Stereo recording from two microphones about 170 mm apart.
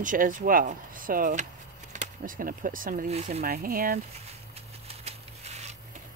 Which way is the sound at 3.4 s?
60° right (ahead or behind).